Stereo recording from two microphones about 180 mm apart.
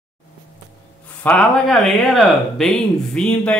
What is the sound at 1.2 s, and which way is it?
Speech, 5° left (ahead or behind).